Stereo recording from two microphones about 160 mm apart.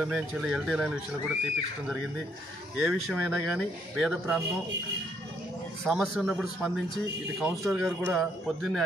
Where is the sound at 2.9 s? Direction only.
5° right (ahead or behind).